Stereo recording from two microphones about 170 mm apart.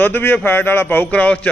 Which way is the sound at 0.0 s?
10° left (ahead or behind).